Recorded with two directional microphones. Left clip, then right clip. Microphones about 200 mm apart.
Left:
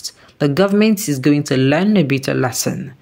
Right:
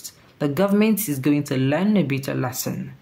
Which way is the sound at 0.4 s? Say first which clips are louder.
Left 6 dB; 20° left (ahead or behind).